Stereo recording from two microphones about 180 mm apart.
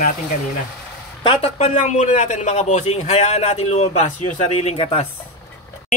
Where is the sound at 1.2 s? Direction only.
35° left (ahead or behind).